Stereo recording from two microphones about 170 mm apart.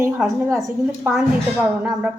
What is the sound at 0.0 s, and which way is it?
A woman's voice, 15° right (ahead or behind).